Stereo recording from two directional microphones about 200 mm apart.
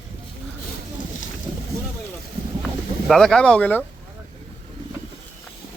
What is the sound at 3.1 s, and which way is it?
Speech, 5° left (ahead or behind).